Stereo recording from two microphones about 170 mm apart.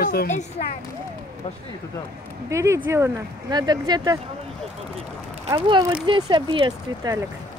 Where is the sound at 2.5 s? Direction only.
15° right (ahead or behind).